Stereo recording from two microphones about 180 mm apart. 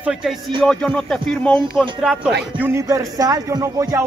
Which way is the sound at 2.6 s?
15° right (ahead or behind).